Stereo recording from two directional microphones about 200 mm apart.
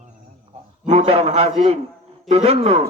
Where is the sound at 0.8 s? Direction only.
30° right (ahead or behind).